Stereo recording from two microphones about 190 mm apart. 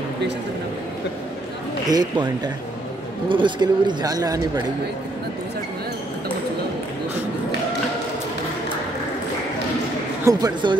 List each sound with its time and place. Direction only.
1.9 s speech: 20° right (ahead or behind)
10.2 s speech: 20° right (ahead or behind)